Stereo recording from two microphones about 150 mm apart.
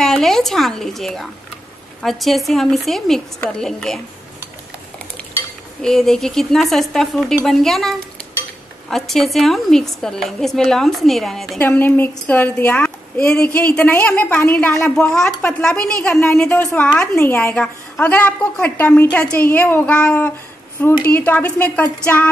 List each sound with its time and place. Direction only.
0.0 s speech: centre (ahead or behind)
5.8 s speech: 5° left (ahead or behind)
8.9 s speech: centre (ahead or behind)
11.6 s a woman's voice: 15° left (ahead or behind)